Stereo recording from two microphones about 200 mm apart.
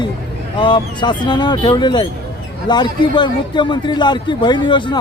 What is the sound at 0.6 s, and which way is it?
Speech, 25° left (ahead or behind).